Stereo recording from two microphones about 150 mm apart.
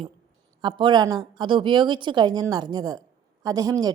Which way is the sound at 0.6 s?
30° right (ahead or behind).